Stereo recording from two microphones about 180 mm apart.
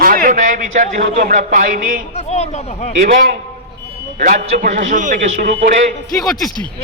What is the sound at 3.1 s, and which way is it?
A man's voice, 45° right (ahead or behind).